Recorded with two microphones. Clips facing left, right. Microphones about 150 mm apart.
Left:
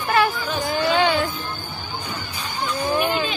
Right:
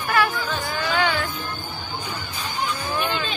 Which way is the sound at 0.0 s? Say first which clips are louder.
Left 2 dB; 25° left (ahead or behind).